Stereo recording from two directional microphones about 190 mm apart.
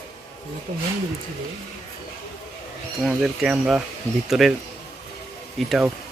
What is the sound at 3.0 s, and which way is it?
Speech, centre (ahead or behind).